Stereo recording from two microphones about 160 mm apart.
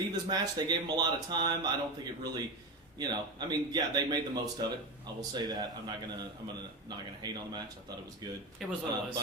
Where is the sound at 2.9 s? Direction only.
25° right (ahead or behind).